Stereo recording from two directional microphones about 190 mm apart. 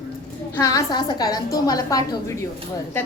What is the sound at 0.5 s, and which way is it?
A woman's voice, 15° left (ahead or behind).